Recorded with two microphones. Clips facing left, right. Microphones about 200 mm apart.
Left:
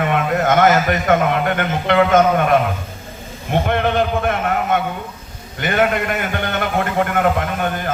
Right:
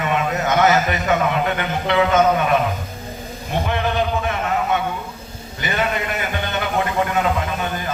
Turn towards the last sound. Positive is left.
turn(degrees=55)  # may be behind; listen again after turning